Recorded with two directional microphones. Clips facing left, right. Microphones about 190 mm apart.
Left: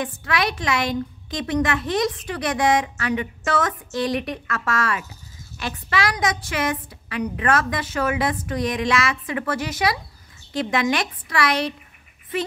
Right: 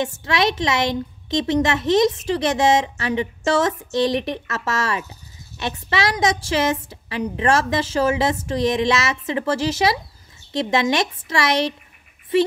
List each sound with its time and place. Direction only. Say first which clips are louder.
0.0 s a woman's voice: right 4 dB; 25° right (ahead or behind)